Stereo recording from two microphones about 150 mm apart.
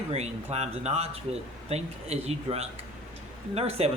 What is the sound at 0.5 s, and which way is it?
Speech, 45° right (ahead or behind).